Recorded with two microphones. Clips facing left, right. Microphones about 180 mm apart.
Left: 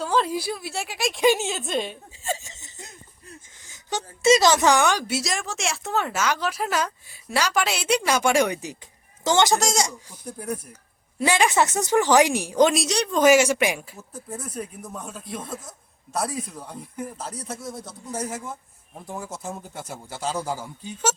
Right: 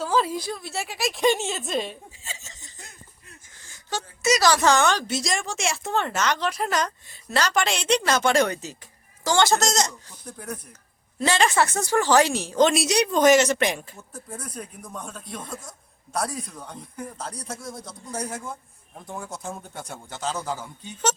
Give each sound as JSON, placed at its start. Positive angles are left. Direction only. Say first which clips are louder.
{"t": 0.0, "sound": "speech", "louder": "even", "side_deg": 0}
{"t": 2.4, "sound": "hiccup", "louder": "left 3 dB", "side_deg": 20}
{"t": 3.7, "sound": "a woman's voice", "louder": "left 1 dB", "side_deg": 20}
{"t": 12.7, "sound": "speech", "louder": "right 2 dB", "side_deg": -5}
{"t": 13.1, "sound": "a woman's voice", "louder": "left 1 dB", "side_deg": 10}